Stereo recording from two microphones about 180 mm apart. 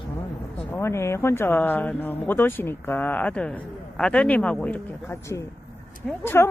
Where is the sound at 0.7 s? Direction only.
15° left (ahead or behind).